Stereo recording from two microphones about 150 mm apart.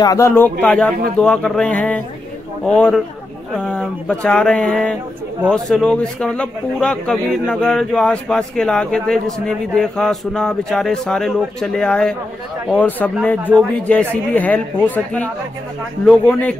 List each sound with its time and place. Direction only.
0.0 s a man's voice: 20° left (ahead or behind)